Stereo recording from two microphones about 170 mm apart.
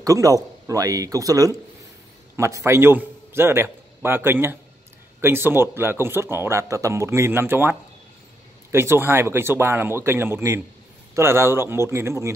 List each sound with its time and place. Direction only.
0.0 s a man's voice: 20° right (ahead or behind)
8.7 s speech: 15° right (ahead or behind)